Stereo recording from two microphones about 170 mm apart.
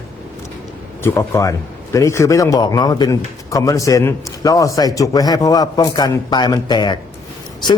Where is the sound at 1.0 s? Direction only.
15° left (ahead or behind).